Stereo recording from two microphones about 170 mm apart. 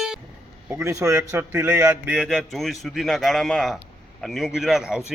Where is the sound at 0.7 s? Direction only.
15° right (ahead or behind).